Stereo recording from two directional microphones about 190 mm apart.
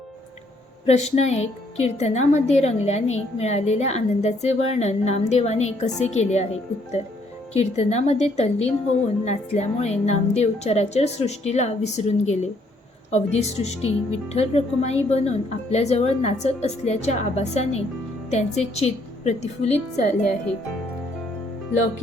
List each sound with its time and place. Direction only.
0.9 s speech: 35° left (ahead or behind)